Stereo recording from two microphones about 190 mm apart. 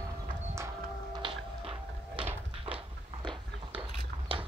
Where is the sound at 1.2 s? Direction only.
25° right (ahead or behind).